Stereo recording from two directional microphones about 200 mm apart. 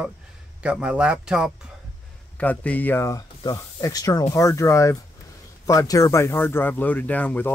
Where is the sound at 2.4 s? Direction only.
5° left (ahead or behind).